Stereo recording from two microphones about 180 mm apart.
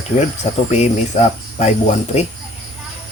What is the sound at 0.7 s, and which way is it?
Speech, 40° left (ahead or behind).